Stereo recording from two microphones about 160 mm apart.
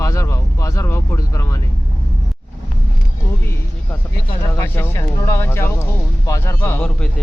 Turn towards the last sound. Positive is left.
turn(degrees=15)  # may be behind; listen again after turning